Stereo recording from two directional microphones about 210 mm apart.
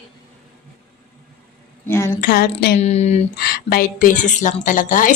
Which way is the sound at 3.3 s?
45° left (ahead or behind).